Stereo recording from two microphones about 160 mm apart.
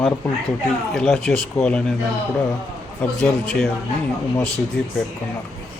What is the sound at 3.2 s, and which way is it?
Speech, 5° left (ahead or behind).